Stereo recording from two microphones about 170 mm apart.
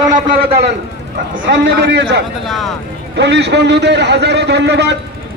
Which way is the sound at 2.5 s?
Centre (ahead or behind).